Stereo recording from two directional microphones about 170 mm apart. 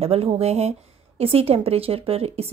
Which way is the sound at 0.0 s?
35° right (ahead or behind).